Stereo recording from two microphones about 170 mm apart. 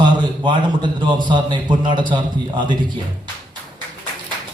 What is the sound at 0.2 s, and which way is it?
A man's voice, 25° right (ahead or behind).